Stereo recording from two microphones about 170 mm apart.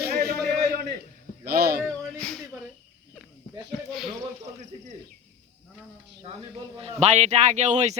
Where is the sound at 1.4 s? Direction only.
65° right (ahead or behind).